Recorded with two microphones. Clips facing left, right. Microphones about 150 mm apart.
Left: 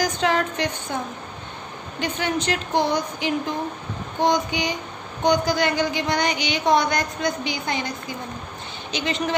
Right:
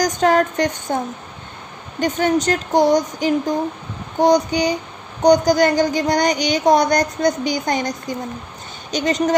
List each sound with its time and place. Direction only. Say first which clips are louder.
0.0 s speech: right 6 dB; 45° right (ahead or behind)